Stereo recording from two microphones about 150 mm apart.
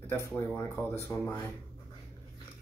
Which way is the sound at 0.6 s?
20° left (ahead or behind).